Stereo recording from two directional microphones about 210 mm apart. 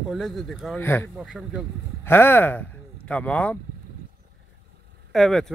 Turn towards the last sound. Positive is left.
turn(degrees=0)  # may be behind; listen again after turning